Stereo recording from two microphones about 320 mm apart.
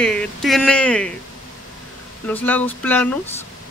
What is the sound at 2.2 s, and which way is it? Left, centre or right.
Speech, centre.